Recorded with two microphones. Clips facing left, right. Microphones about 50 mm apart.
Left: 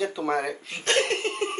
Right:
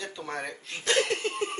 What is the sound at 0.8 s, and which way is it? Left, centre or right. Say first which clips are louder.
Laughter: left 2 dB; left.